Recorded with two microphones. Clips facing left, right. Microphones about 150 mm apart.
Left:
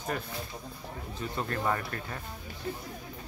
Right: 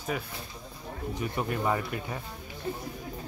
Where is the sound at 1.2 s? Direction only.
15° right (ahead or behind).